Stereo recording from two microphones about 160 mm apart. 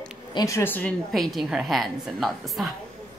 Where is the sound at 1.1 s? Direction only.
Centre (ahead or behind).